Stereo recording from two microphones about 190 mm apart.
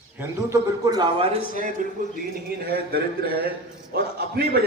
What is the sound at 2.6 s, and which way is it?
A man's voice, 55° right (ahead or behind).